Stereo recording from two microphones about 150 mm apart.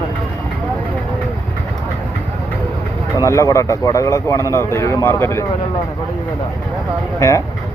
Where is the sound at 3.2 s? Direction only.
20° left (ahead or behind).